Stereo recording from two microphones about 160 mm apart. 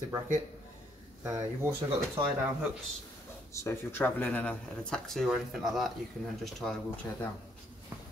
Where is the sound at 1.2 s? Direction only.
20° right (ahead or behind).